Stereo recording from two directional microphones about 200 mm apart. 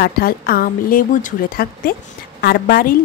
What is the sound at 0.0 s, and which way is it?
A woman's voice, 45° left (ahead or behind).